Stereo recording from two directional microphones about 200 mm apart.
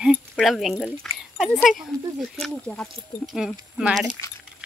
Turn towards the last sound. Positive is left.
turn(degrees=-5)  # may be behind; listen again after turning